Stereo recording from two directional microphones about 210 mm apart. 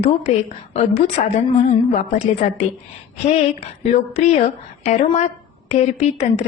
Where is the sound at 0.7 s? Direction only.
30° left (ahead or behind).